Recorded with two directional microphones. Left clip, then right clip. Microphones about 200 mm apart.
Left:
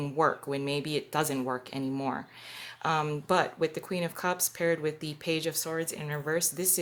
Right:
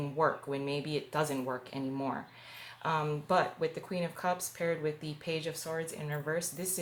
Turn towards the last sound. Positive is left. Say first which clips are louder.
# left 5 dB
turn(degrees=50)  # may be behind; listen again after turning